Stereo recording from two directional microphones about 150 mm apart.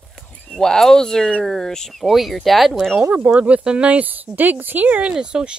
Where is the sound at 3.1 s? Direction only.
5° right (ahead or behind).